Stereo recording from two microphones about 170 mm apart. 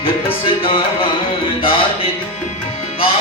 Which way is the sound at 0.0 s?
30° left (ahead or behind).